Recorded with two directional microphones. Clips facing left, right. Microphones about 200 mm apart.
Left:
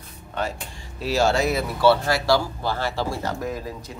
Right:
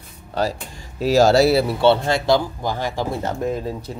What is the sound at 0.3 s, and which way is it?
Speech, 35° right (ahead or behind).